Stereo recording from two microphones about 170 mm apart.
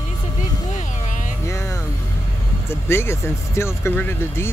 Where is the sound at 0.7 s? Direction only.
45° left (ahead or behind).